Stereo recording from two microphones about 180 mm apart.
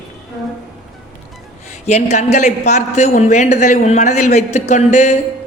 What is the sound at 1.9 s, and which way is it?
A woman's voice, 40° left (ahead or behind).